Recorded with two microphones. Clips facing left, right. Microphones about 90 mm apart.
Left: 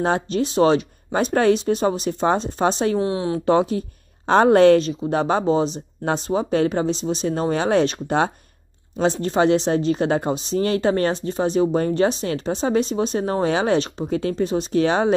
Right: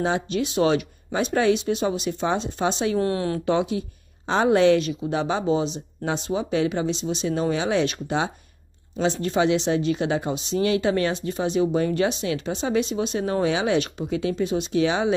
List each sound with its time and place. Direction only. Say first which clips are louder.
0.0 s speech: left 3 dB; 40° left (ahead or behind)
3.0 s speech: left 1 dB; 20° left (ahead or behind)
3.4 s speech: left 6 dB; 40° left (ahead or behind)
4.3 s a woman's voice: left 5 dB; 50° left (ahead or behind)
4.7 s speech: left 4 dB; 35° left (ahead or behind)